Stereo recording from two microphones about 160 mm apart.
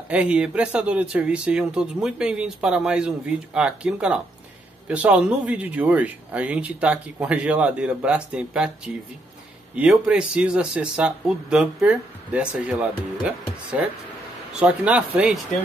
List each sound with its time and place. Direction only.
0.1 s speech: 5° right (ahead or behind)